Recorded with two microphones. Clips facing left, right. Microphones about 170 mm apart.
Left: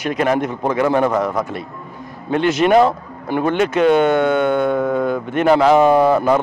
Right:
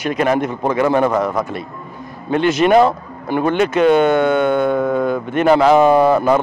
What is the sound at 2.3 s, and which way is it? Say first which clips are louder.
Speech: right 1 dB; 10° right (ahead or behind).